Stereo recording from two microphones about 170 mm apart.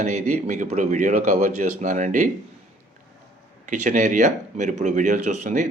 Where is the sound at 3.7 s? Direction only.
50° right (ahead or behind).